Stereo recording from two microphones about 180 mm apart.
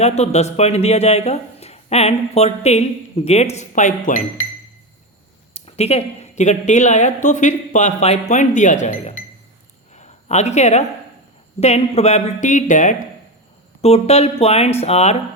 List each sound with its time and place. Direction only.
0.0 s speech: 40° left (ahead or behind)
5.5 s speech: 35° left (ahead or behind)
9.9 s a sound: 40° left (ahead or behind)
11.6 s speech: 35° left (ahead or behind)
13.8 s speech: 35° left (ahead or behind)